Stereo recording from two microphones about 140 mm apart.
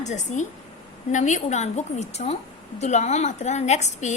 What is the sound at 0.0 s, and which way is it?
A woman's voice, 55° left (ahead or behind).